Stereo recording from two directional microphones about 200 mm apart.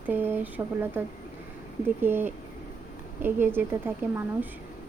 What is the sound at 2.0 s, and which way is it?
Speech, 10° right (ahead or behind).